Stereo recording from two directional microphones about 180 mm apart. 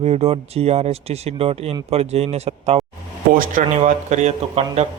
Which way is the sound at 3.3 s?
50° right (ahead or behind).